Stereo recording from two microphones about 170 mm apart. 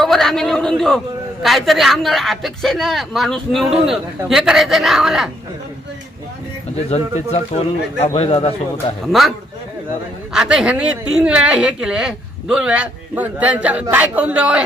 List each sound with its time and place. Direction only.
0.0 s a man's voice: centre (ahead or behind)
6.9 s speech: 40° left (ahead or behind)
10.3 s a man's voice: 5° right (ahead or behind)